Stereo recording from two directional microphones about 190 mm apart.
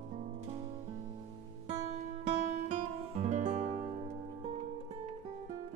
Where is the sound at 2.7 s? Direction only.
40° right (ahead or behind).